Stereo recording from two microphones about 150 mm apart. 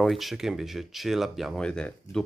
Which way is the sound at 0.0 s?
Centre (ahead or behind).